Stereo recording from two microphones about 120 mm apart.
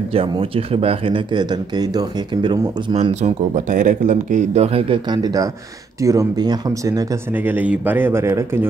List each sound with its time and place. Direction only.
0.1 s speech: 50° right (ahead or behind); by 2.7 s 35° right (ahead or behind)
2.9 s speech: 65° right (ahead or behind); by 4.6 s 90° right
4.6 s speech: 50° right (ahead or behind); by 7.1 s 30° right (ahead or behind)
7.3 s speech: 15° right (ahead or behind)